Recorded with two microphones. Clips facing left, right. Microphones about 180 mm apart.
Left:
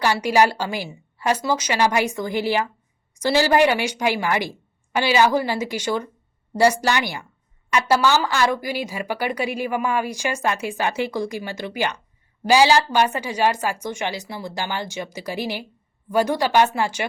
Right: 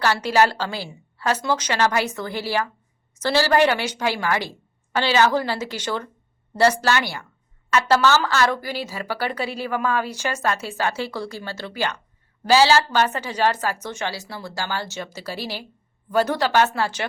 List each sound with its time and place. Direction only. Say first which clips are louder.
0.0 s a woman's voice: left 1 dB; 15° left (ahead or behind)